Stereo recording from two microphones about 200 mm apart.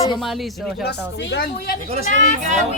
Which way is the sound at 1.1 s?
60° left (ahead or behind).